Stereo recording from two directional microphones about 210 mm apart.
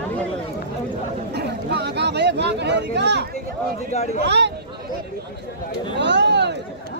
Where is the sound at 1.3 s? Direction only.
50° right (ahead or behind).